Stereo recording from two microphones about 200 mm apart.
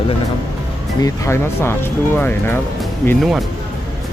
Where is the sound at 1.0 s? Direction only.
15° left (ahead or behind).